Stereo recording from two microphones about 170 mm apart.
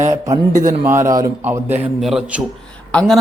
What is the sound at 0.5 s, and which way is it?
Speech, 50° right (ahead or behind).